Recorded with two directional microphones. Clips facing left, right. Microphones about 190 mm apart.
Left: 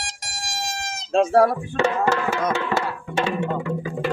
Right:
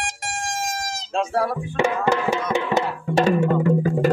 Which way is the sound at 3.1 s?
40° right (ahead or behind).